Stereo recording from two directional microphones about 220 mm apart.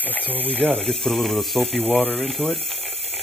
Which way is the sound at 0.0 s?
5° left (ahead or behind).